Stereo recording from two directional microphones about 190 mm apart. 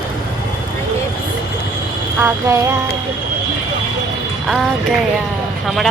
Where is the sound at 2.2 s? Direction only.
10° right (ahead or behind).